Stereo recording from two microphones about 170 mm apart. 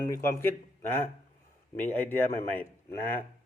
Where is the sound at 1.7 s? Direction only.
10° left (ahead or behind).